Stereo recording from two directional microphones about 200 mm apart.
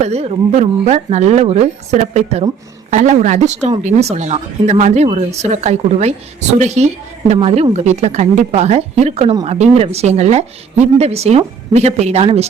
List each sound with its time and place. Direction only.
0.0 s a woman's voice: 30° right (ahead or behind)